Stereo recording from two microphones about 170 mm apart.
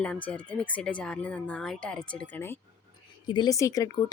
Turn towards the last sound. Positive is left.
turn(degrees=20)  # may be behind; listen again after turning